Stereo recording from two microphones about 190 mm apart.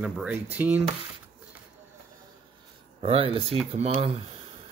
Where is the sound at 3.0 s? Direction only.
30° right (ahead or behind).